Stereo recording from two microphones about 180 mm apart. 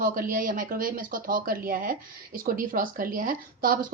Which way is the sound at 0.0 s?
50° right (ahead or behind).